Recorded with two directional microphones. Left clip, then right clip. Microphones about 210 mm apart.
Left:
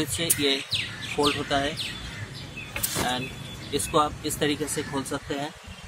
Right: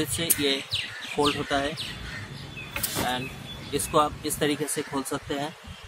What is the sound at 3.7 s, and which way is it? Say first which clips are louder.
Speech: even; 10° right (ahead or behind).